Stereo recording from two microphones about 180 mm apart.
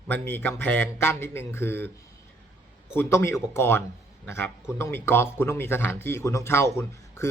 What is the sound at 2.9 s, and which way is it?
Speech, 10° left (ahead or behind).